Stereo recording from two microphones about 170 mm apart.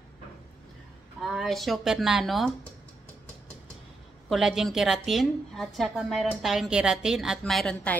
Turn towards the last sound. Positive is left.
turn(degrees=5)  # may be behind; listen again after turning